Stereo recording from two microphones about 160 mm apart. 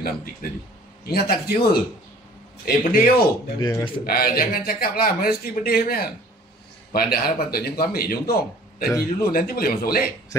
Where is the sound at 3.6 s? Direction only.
20° left (ahead or behind).